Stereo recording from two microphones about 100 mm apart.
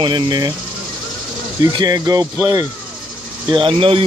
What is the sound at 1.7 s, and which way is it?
Speech, 40° right (ahead or behind).